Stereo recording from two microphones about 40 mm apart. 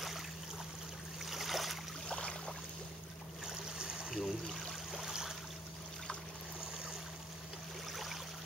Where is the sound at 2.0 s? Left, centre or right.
Left.